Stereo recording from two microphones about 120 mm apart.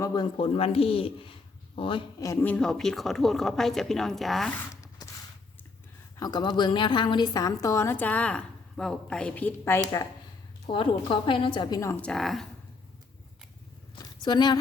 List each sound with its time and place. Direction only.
0.0 s speech: 35° left (ahead or behind)
0.3 s a man's voice: 55° left (ahead or behind)
2.1 s a woman's voice: 25° left (ahead or behind)
2.4 s a woman's voice: 10° left (ahead or behind)
4.7 s a sound: 25° left (ahead or behind)
6.1 s a woman's voice: 35° left (ahead or behind); by 9.8 s 15° left (ahead or behind)
9.8 s speech: 30° left (ahead or behind)
10.7 s a woman's voice: 45° left (ahead or behind)
11.9 s a woman's voice: 5° left (ahead or behind)
13.9 s a sound: 40° left (ahead or behind)